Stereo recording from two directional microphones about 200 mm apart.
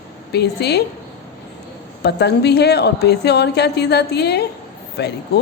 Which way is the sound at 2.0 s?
55° left (ahead or behind).